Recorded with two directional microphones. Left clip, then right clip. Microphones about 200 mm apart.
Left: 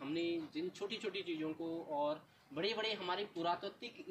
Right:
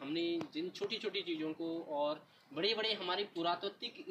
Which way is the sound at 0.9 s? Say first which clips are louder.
Right 3 dB; 10° left (ahead or behind).